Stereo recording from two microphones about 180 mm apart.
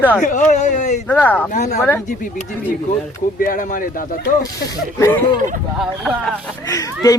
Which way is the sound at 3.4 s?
50° left (ahead or behind).